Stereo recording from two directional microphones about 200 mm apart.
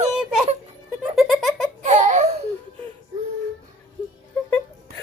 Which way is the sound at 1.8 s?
35° right (ahead or behind).